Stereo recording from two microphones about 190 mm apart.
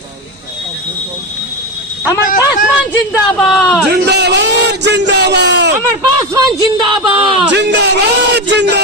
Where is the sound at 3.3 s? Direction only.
5° left (ahead or behind).